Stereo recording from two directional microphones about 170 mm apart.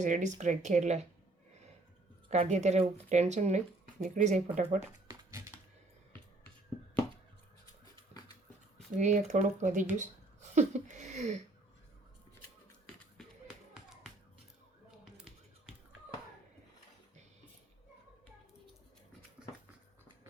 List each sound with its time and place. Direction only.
0.0 s speech: 45° right (ahead or behind)
2.3 s speech: 40° right (ahead or behind)
8.1 s a sound: 40° right (ahead or behind)
9.0 s speech: 45° right (ahead or behind)
10.0 s a sound: 45° right (ahead or behind)
14.8 s finger snapping: centre (ahead or behind)